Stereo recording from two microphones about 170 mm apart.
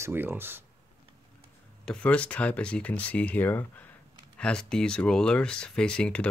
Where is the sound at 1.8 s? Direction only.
5° left (ahead or behind).